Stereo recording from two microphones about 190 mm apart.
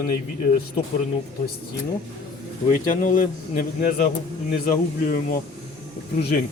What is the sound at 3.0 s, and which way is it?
Speech, 45° left (ahead or behind).